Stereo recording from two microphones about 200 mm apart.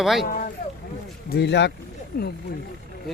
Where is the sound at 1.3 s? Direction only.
60° left (ahead or behind).